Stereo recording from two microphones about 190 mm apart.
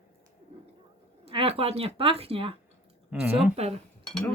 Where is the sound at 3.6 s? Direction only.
35° right (ahead or behind).